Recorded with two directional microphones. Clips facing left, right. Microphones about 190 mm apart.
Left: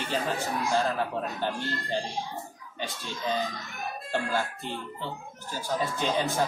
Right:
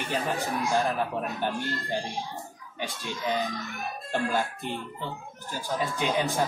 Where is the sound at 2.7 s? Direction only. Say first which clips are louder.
Right 2 dB; 15° right (ahead or behind).